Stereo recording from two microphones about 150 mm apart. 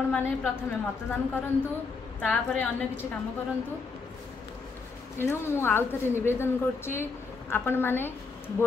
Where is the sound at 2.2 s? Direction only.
10° left (ahead or behind).